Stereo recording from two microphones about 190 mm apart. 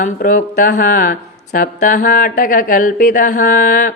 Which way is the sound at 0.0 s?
45° left (ahead or behind).